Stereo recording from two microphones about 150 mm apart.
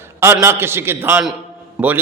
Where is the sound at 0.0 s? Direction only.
20° right (ahead or behind).